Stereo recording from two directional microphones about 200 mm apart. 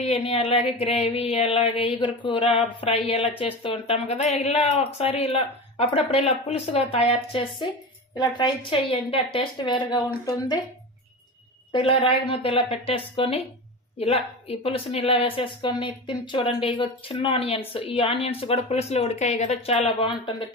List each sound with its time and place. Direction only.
0.0 s a woman's voice: 30° left (ahead or behind)
11.7 s a woman's voice: 25° left (ahead or behind)